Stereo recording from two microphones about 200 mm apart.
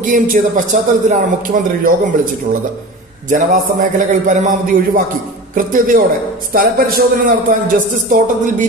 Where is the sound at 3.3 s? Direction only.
40° right (ahead or behind).